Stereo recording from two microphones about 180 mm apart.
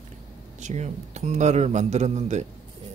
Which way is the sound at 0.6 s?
40° right (ahead or behind).